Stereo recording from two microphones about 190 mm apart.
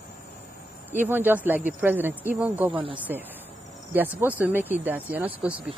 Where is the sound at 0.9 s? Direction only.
10° right (ahead or behind).